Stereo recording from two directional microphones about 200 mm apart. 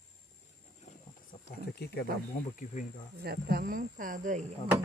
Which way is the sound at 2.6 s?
40° left (ahead or behind).